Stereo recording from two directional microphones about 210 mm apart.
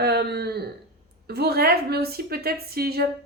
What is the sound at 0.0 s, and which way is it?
A woman's voice, 50° right (ahead or behind).